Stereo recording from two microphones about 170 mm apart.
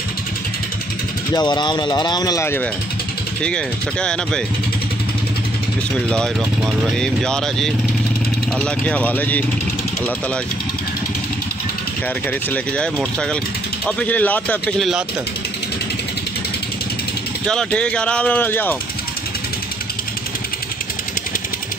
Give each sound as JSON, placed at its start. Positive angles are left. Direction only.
{"t": 1.3, "sound": "speech", "side_deg": 25}
{"t": 6.0, "sound": "speech", "side_deg": 5}
{"t": 12.3, "sound": "speech", "side_deg": 5}
{"t": 17.5, "sound": "speech", "side_deg": 5}